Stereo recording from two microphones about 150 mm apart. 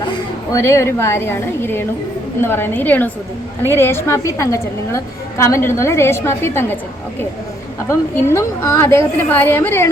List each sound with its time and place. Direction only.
0.5 s a woman's voice: 20° left (ahead or behind)
7.9 s a woman's voice: 20° left (ahead or behind)